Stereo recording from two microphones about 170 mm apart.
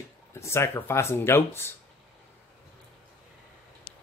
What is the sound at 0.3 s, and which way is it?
Speech, 15° left (ahead or behind).